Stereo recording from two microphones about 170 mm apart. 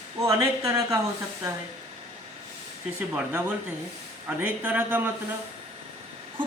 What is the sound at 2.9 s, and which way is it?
Speech, 10° right (ahead or behind).